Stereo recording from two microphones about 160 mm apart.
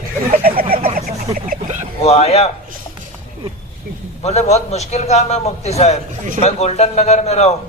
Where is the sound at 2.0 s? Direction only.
40° left (ahead or behind).